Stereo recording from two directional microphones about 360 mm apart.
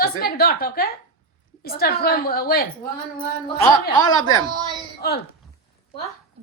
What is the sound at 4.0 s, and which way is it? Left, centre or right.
Speech, centre.